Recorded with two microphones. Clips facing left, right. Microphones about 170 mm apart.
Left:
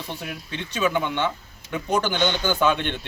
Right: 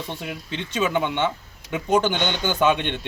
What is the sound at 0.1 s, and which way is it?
A man's voice, 20° right (ahead or behind).